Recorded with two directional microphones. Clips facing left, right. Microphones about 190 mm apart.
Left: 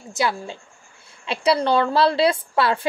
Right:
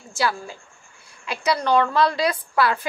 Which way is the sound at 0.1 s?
20° left (ahead or behind).